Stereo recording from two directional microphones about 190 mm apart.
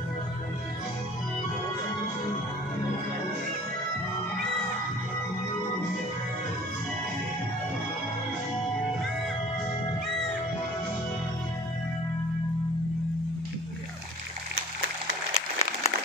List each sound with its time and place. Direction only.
15.3 s applause: 30° left (ahead or behind)